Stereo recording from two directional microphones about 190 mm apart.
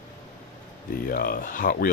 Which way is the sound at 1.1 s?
50° left (ahead or behind).